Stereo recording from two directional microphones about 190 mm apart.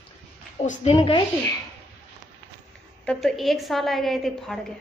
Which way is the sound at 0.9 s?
25° left (ahead or behind).